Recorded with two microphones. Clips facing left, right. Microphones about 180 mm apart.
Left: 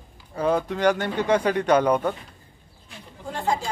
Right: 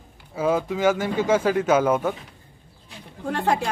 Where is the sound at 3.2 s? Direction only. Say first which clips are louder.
Right 3 dB; 65° right (ahead or behind).